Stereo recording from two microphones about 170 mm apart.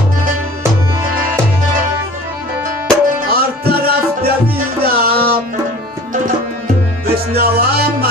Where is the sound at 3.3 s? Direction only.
65° right (ahead or behind).